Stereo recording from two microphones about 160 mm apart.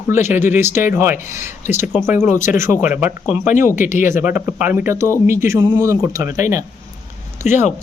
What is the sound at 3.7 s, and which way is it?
Speech, 50° left (ahead or behind).